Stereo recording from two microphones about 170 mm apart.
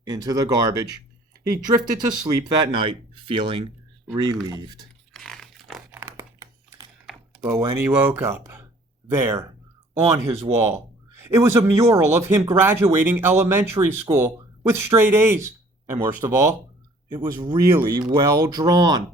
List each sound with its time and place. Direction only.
0.0 s speech: 20° right (ahead or behind)
5.1 s a sound: 5° left (ahead or behind)
5.9 s computer keyboard: 15° right (ahead or behind)
7.0 s typing: 10° right (ahead or behind)
7.8 s speech: 10° right (ahead or behind)